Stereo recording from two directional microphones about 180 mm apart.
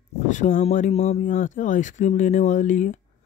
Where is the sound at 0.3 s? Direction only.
45° left (ahead or behind).